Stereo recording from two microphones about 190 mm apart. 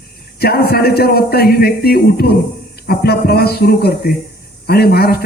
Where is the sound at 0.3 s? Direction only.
55° left (ahead or behind).